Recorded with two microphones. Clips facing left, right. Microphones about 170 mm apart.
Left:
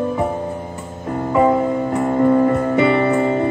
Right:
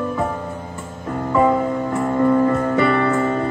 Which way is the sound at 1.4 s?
20° left (ahead or behind).